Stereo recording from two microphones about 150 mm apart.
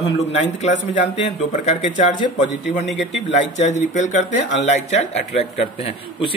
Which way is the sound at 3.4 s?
50° left (ahead or behind).